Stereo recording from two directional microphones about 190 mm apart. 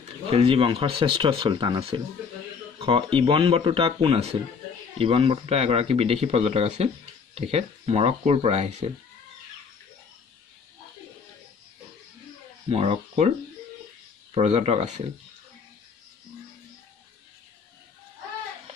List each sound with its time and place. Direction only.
0.3 s speech: 30° right (ahead or behind)
12.6 s speech: 30° right (ahead or behind)
14.3 s speech: 35° right (ahead or behind)